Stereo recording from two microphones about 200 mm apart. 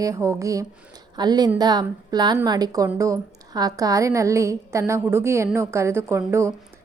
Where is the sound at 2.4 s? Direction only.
20° right (ahead or behind).